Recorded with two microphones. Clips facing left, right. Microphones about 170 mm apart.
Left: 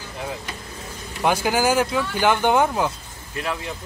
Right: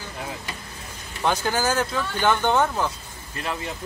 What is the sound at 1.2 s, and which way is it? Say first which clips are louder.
Speech: left 3 dB; 10° left (ahead or behind).